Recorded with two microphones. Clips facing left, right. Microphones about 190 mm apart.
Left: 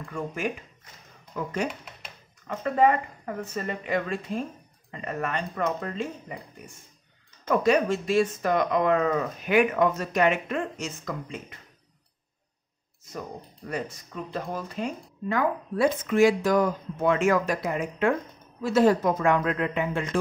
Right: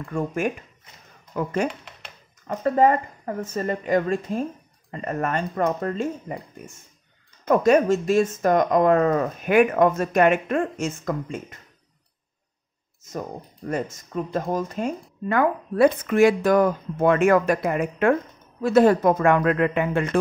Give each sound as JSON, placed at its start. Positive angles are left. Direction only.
{"t": 0.0, "sound": "speech", "side_deg": -50}
{"t": 1.7, "sound": "a sound", "side_deg": 0}
{"t": 2.4, "sound": "speech", "side_deg": -40}
{"t": 7.4, "sound": "speech", "side_deg": -45}
{"t": 13.7, "sound": "speech", "side_deg": -45}